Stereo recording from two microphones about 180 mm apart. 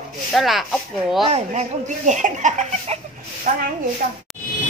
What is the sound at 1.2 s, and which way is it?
A woman's voice, 35° right (ahead or behind).